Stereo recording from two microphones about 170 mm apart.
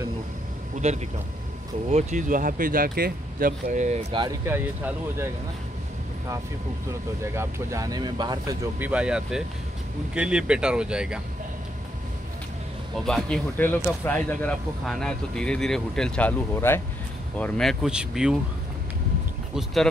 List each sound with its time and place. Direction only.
0.7 s a man's voice: 40° right (ahead or behind)
4.1 s speech: 25° right (ahead or behind)
4.5 s speech: 10° right (ahead or behind)
6.9 s speech: 15° right (ahead or behind)
8.7 s speech: 10° right (ahead or behind)
13.0 s speech: 5° left (ahead or behind)
17.4 s speech: centre (ahead or behind)
19.5 s speech: centre (ahead or behind)